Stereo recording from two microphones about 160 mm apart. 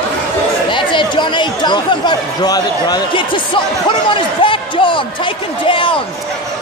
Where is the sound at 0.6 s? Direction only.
30° left (ahead or behind).